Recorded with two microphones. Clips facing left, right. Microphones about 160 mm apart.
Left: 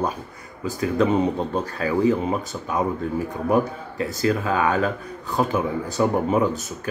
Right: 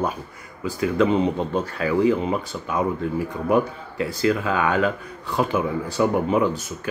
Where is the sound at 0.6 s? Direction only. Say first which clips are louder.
Right 1 dB; 40° left (ahead or behind).